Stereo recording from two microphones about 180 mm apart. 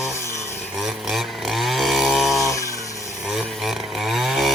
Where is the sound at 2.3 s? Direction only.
15° left (ahead or behind).